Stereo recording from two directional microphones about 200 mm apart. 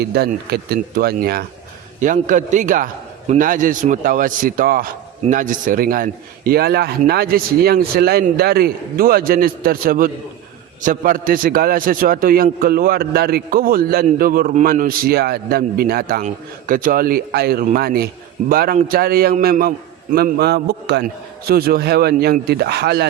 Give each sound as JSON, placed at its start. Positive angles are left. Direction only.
{"t": 0.0, "sound": "a man's voice", "side_deg": -55}
{"t": 2.0, "sound": "a man's voice", "side_deg": -40}